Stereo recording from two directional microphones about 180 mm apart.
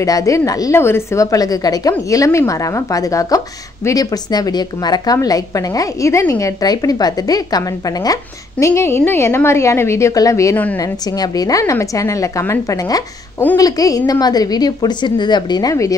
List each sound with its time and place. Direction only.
0.0 s a woman's voice: 20° left (ahead or behind)
10.8 s a woman's voice: 20° left (ahead or behind)